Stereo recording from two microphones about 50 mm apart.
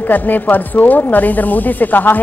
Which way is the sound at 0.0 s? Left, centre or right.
Left.